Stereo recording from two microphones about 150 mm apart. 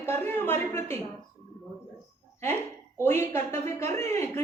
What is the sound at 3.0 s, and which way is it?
Speech, 15° left (ahead or behind).